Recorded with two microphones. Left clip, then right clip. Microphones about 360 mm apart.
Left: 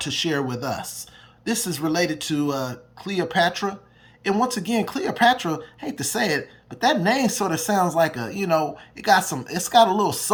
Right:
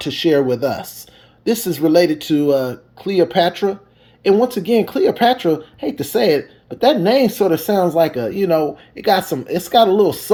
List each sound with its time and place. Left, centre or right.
0.0 s speech: left
4.4 s speech: centre